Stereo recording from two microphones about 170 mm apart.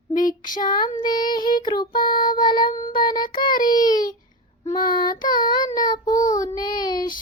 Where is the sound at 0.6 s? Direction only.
25° left (ahead or behind).